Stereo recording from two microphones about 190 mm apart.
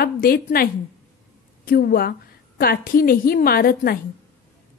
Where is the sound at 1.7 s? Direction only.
50° left (ahead or behind).